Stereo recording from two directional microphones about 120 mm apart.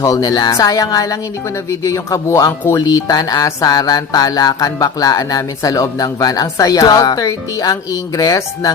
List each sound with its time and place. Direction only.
0.0 s speech: 30° left (ahead or behind)